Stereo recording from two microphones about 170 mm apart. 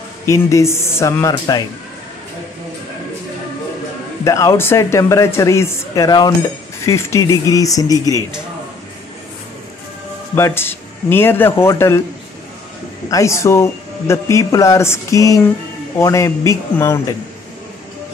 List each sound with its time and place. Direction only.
0.3 s speech: 20° left (ahead or behind)
4.2 s speech: 20° left (ahead or behind)
10.3 s speech: 15° left (ahead or behind)
13.1 s speech: 15° left (ahead or behind)